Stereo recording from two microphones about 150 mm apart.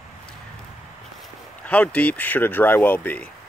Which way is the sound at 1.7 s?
10° left (ahead or behind).